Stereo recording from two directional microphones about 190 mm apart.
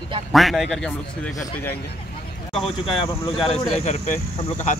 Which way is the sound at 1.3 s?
15° left (ahead or behind).